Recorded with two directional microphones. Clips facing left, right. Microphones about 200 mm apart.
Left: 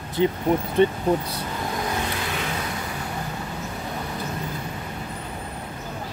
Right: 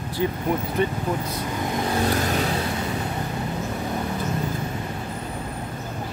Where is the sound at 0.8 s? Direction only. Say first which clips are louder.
Left 4 dB; 35° left (ahead or behind).